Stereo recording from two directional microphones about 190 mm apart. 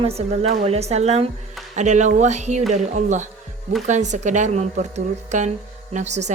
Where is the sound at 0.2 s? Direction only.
35° right (ahead or behind).